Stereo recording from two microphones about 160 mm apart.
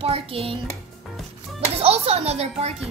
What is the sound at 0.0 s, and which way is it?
Speech, 40° right (ahead or behind).